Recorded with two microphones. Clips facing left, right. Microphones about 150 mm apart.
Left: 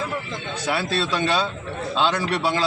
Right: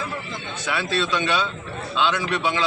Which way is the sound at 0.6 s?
35° left (ahead or behind).